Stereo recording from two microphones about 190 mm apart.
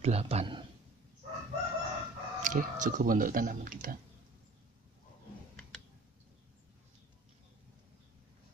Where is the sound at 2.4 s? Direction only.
40° right (ahead or behind).